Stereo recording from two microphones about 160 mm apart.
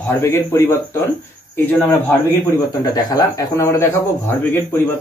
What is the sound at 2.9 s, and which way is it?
Speech, 25° left (ahead or behind).